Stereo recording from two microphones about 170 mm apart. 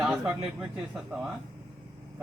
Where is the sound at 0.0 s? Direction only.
Centre (ahead or behind).